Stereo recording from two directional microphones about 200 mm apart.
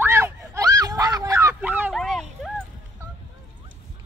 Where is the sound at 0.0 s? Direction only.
10° right (ahead or behind).